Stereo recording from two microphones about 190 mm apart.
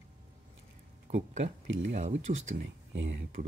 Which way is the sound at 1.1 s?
35° right (ahead or behind).